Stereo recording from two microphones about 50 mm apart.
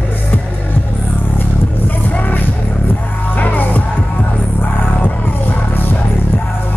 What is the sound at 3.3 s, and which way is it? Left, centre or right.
Music, left.